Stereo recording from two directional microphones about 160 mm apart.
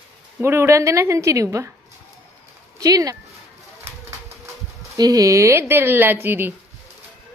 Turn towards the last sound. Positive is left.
turn(degrees=-15)  # may be behind; listen again after turning